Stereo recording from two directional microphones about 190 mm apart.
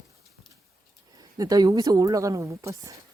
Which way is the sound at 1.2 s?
20° right (ahead or behind).